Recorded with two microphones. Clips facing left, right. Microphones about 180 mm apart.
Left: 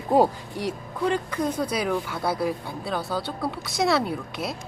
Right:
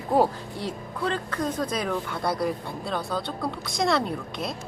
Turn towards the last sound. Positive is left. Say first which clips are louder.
# left 1 dB
turn(degrees=5)  # may be behind; listen again after turning